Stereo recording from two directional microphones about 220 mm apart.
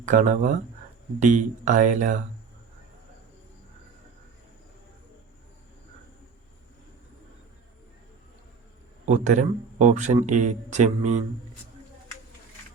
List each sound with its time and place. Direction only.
0.0 s speech: 35° right (ahead or behind)
9.0 s speech: 35° right (ahead or behind)